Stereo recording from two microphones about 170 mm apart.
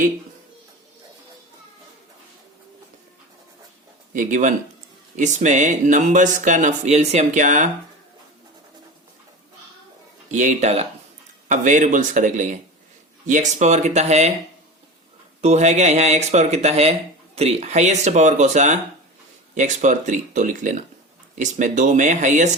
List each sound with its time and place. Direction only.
4.1 s speech: 50° right (ahead or behind)
10.3 s speech: 45° right (ahead or behind)
15.4 s speech: 40° right (ahead or behind)